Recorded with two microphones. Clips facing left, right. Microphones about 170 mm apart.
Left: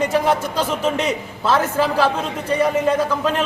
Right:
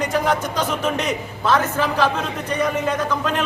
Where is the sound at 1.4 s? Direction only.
10° left (ahead or behind).